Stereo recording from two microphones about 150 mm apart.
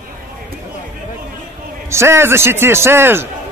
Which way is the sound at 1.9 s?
15° right (ahead or behind).